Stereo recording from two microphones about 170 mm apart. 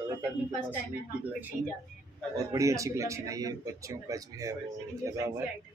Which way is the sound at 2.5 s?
20° right (ahead or behind).